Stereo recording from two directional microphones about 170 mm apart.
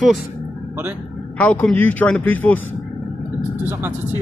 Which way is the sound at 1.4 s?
10° left (ahead or behind).